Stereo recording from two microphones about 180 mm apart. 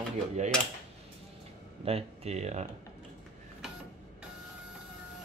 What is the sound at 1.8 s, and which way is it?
Speech, 35° right (ahead or behind).